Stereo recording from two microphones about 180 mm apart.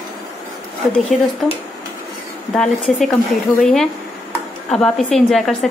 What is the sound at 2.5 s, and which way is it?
A woman's voice, 5° left (ahead or behind).